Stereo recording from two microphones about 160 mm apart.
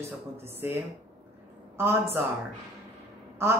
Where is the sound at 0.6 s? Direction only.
15° right (ahead or behind).